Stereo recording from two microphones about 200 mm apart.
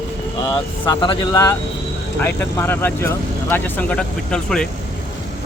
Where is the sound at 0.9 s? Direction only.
20° left (ahead or behind).